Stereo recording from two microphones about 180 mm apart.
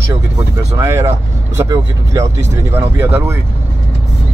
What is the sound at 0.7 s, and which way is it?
Speech, 15° right (ahead or behind).